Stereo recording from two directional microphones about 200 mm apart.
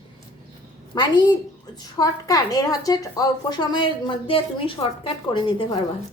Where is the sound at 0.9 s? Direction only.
20° left (ahead or behind).